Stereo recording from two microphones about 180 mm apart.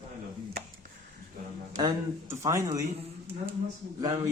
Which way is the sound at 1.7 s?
20° right (ahead or behind).